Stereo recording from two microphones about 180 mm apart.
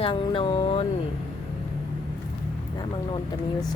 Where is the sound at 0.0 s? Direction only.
30° left (ahead or behind).